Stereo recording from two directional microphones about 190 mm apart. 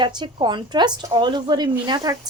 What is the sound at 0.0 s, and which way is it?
Speech, 25° right (ahead or behind).